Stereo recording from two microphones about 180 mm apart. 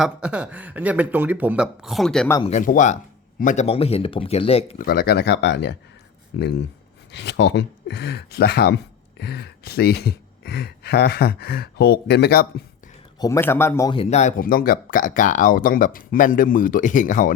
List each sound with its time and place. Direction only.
0.0 s speech: 5° right (ahead or behind)
2.4 s speech: 40° left (ahead or behind)
4.8 s speech: 55° left (ahead or behind)
13.1 s speech: 15° left (ahead or behind)
13.9 s speech: 35° left (ahead or behind)